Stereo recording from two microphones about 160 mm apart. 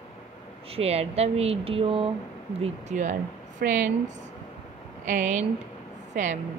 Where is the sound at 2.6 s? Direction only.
45° right (ahead or behind).